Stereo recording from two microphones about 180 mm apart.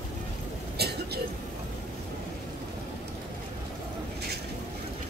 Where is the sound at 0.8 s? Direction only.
65° right (ahead or behind).